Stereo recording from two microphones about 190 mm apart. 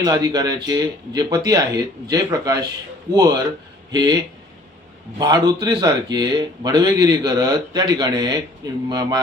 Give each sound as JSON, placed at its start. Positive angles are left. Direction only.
{"t": 0.0, "sound": "speech", "side_deg": -20}